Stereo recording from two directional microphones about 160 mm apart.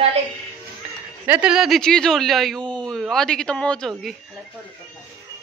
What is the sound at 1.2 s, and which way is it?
Speech, 10° right (ahead or behind).